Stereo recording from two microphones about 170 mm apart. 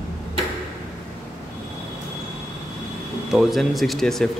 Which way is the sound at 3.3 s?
Centre (ahead or behind).